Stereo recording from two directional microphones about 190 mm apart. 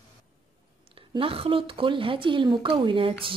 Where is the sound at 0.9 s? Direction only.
30° right (ahead or behind).